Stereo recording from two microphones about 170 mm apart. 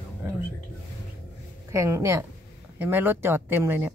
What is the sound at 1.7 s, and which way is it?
Speech, 20° right (ahead or behind).